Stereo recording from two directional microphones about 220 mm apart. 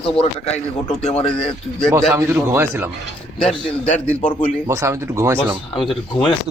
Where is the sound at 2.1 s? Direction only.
10° right (ahead or behind).